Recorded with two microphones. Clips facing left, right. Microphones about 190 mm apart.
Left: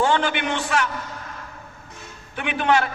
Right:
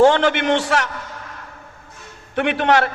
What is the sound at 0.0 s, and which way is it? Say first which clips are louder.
Speech: right 7 dB; 70° right (ahead or behind).